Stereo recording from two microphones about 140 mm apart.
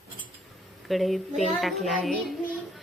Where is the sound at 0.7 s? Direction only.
Centre (ahead or behind).